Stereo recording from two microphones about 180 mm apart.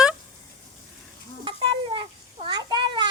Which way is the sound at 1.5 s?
25° right (ahead or behind).